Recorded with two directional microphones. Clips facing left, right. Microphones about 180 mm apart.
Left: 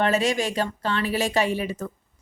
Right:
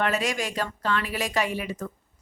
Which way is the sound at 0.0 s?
30° left (ahead or behind).